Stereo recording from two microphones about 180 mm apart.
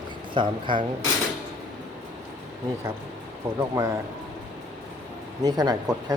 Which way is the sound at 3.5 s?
20° right (ahead or behind).